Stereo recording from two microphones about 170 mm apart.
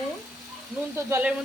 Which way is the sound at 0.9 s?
10° right (ahead or behind).